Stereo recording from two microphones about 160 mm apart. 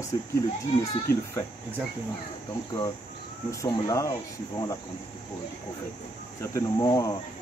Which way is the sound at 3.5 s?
20° left (ahead or behind).